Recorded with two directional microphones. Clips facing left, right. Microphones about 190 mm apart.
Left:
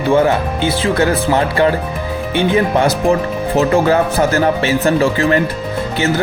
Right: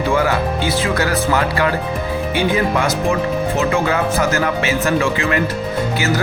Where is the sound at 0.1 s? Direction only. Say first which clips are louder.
Left 6 dB; 25° left (ahead or behind).